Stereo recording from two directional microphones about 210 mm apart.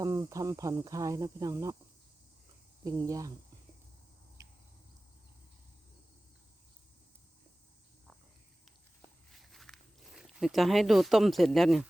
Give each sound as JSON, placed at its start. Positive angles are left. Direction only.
{"t": 0.0, "sound": "speech", "side_deg": -15}
{"t": 2.8, "sound": "speech", "side_deg": -15}
{"t": 4.4, "sound": "a sound", "side_deg": -15}
{"t": 9.3, "sound": "walk", "side_deg": 0}